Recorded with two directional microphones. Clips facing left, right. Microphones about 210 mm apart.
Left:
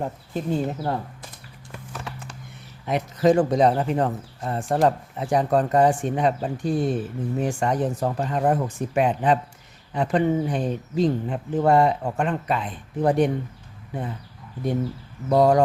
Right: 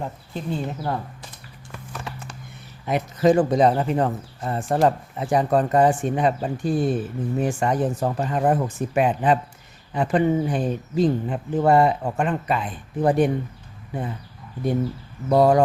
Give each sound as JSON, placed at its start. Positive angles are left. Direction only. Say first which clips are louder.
{"t": 0.0, "sound": "speech", "louder": "left 3 dB", "side_deg": 45}
{"t": 2.8, "sound": "speech", "louder": "right 1 dB", "side_deg": -5}
{"t": 15.3, "sound": "speech", "louder": "right 1 dB", "side_deg": -5}